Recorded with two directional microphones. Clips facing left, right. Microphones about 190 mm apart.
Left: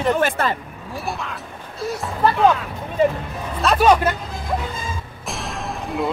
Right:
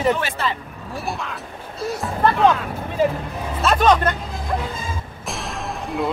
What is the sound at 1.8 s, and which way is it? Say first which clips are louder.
Speech: even; centre (ahead or behind).